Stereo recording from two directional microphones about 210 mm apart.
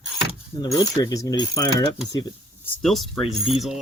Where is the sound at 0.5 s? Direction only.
20° left (ahead or behind).